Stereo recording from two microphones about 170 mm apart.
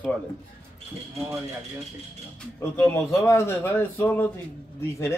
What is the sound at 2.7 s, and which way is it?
A man's voice, 15° left (ahead or behind).